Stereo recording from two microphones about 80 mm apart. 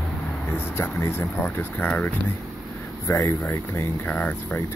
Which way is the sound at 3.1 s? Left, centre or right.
Left.